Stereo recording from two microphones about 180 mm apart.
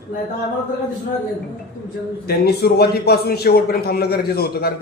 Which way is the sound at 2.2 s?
60° left (ahead or behind).